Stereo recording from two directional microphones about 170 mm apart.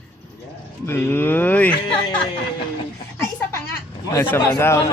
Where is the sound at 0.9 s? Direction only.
15° left (ahead or behind).